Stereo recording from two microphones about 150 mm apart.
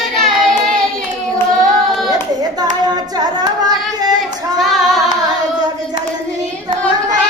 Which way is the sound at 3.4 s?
25° right (ahead or behind).